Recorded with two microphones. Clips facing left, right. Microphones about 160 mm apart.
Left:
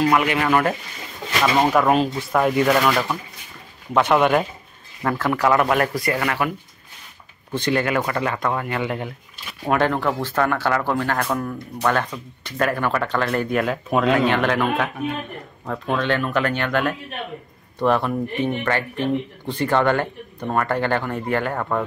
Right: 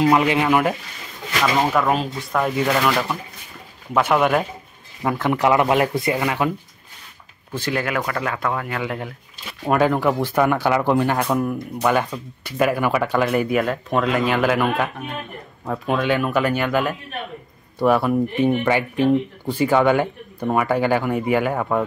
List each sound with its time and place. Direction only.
0.0 s speech: 25° right (ahead or behind)
0.5 s speech: 10° right (ahead or behind)
1.4 s speech: 5° left (ahead or behind)
3.9 s speech: 5° right (ahead or behind)
5.0 s speech: 15° right (ahead or behind)
7.5 s speech: 5° right (ahead or behind)